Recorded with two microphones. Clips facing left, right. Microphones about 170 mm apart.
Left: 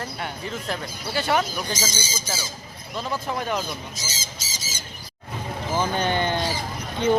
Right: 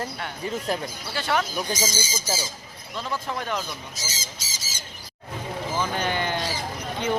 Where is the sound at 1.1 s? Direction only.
15° left (ahead or behind).